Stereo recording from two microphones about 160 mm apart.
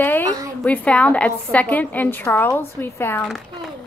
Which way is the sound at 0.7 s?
10° left (ahead or behind).